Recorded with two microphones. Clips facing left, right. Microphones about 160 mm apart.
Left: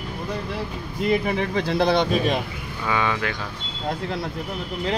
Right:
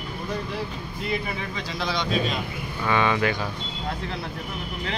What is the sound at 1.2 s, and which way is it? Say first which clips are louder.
Speech: left 8 dB; 60° left (ahead or behind).